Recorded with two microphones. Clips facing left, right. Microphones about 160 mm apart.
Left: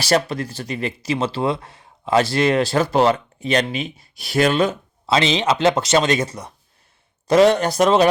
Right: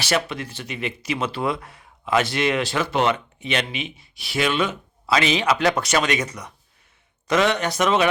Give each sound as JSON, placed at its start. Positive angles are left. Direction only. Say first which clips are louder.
{"t": 0.0, "sound": "speech", "louder": "left 5 dB", "side_deg": 40}